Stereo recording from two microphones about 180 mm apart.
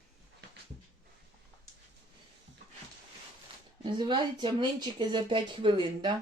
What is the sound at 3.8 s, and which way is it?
Speech, 25° right (ahead or behind).